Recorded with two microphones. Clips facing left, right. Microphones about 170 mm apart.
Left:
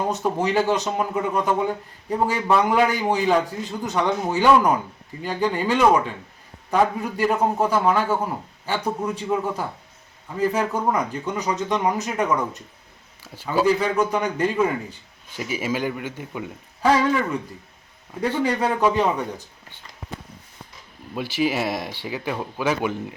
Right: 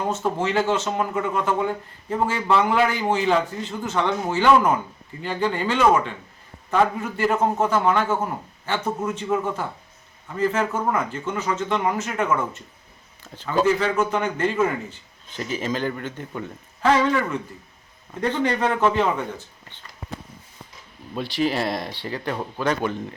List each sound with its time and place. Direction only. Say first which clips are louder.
0.1 s speech: left 1 dB; 15° left (ahead or behind)
21.1 s speech: even; 5° left (ahead or behind)